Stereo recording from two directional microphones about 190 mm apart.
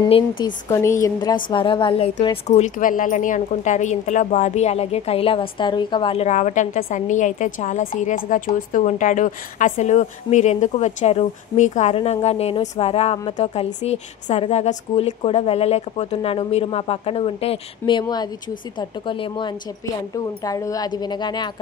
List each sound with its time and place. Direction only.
0.4 s a woman's voice: 20° left (ahead or behind)
2.4 s a woman's voice: 40° left (ahead or behind)